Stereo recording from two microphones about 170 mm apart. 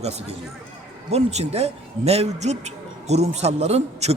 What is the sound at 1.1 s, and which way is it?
Speech, 40° right (ahead or behind).